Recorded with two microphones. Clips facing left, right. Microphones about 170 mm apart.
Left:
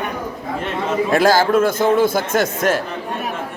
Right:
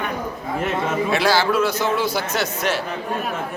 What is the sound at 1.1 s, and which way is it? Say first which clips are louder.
A man's voice: left 5 dB; 45° left (ahead or behind).